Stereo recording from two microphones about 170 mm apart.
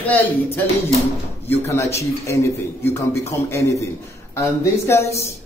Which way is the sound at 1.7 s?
15° left (ahead or behind).